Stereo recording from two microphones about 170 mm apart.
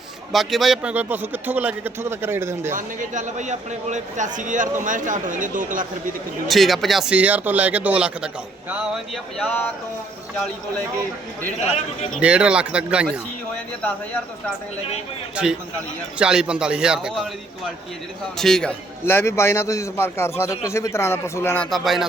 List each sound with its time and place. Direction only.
0.3 s speech: centre (ahead or behind)
2.7 s speech: 50° right (ahead or behind)
6.5 s a man's voice: centre (ahead or behind)
9.5 s a man's voice: 10° left (ahead or behind)
12.2 s speech: 5° right (ahead or behind)
13.8 s a man's voice: 10° left (ahead or behind)
16.1 s a man's voice: 5° right (ahead or behind)
18.3 s a man's voice: centre (ahead or behind)
19.0 s a man's voice: 15° left (ahead or behind)